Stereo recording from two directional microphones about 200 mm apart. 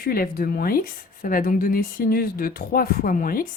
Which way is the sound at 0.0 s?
45° left (ahead or behind).